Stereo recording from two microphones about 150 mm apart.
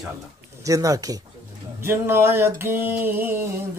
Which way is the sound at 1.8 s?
15° right (ahead or behind).